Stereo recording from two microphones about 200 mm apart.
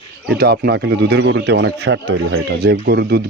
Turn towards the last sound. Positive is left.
turn(degrees=-55)  # may be behind; listen again after turning